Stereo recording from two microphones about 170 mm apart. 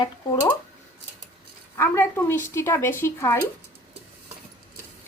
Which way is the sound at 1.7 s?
15° left (ahead or behind).